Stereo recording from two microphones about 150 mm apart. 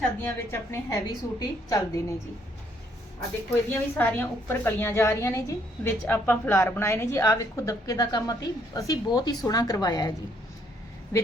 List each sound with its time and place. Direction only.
0.2 s a woman's voice: 15° left (ahead or behind)
3.7 s a woman's voice: 10° left (ahead or behind)